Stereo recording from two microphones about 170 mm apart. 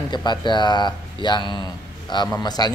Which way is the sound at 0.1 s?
25° left (ahead or behind).